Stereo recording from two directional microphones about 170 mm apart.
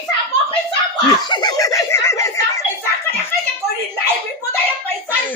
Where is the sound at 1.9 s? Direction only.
15° left (ahead or behind).